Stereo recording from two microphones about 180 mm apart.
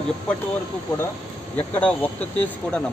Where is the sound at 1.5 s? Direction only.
10° left (ahead or behind).